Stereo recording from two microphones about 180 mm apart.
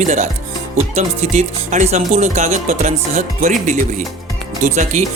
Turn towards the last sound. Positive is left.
turn(degrees=-40)  # may be behind; listen again after turning